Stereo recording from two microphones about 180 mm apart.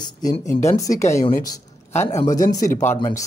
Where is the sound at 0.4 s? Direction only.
15° left (ahead or behind).